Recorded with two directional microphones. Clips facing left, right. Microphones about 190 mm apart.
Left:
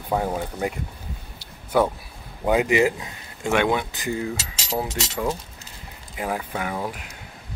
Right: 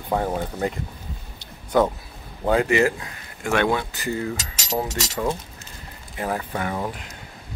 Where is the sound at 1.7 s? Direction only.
10° left (ahead or behind).